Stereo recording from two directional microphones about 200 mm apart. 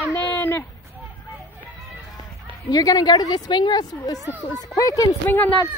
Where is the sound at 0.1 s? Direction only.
10° left (ahead or behind).